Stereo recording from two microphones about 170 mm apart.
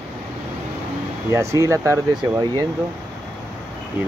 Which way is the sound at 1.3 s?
15° right (ahead or behind).